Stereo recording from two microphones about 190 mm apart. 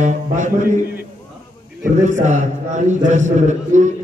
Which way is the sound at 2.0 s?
40° right (ahead or behind).